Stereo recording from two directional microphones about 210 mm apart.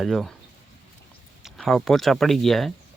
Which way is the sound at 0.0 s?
Centre (ahead or behind).